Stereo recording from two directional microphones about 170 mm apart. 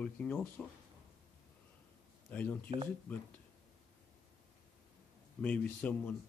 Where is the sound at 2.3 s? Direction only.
10° left (ahead or behind).